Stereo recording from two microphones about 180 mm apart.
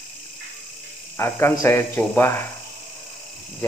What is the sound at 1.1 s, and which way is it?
Speech, 15° left (ahead or behind).